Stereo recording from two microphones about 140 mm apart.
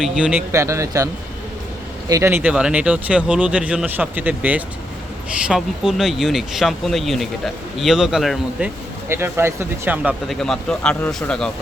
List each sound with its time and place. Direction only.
0.0 s speech: 10° right (ahead or behind)
0.5 s speech: 20° right (ahead or behind); by 8.7 s centre (ahead or behind)
9.0 s speech: 15° right (ahead or behind)
10.2 s speech: 5° left (ahead or behind)